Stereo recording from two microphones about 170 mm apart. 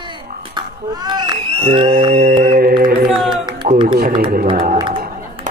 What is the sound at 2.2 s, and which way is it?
Mantra, 55° right (ahead or behind).